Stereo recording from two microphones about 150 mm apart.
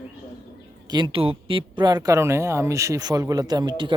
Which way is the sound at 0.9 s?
35° right (ahead or behind).